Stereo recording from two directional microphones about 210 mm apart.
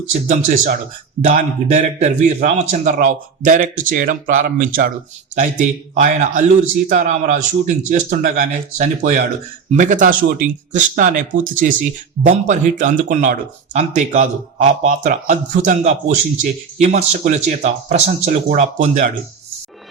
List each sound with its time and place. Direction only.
0.1 s a man's voice: 40° right (ahead or behind)